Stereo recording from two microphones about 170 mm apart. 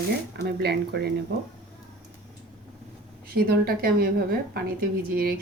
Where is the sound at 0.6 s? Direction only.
70° right (ahead or behind).